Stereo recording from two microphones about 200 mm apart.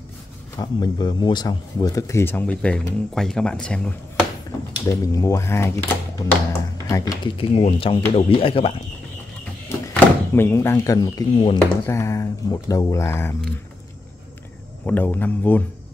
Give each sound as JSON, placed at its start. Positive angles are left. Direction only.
{"t": 0.6, "sound": "speech", "side_deg": 20}
{"t": 4.8, "sound": "speech", "side_deg": 15}
{"t": 7.3, "sound": "speech", "side_deg": 30}
{"t": 9.7, "sound": "speech", "side_deg": 10}
{"t": 14.9, "sound": "speech", "side_deg": 10}